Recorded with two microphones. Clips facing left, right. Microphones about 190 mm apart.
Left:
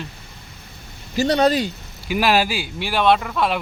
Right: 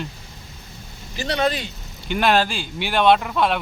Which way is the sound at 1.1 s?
40° left (ahead or behind).